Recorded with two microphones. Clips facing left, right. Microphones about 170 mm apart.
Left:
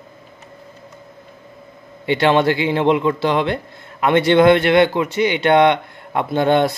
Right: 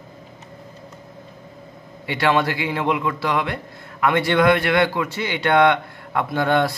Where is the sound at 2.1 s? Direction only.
25° left (ahead or behind).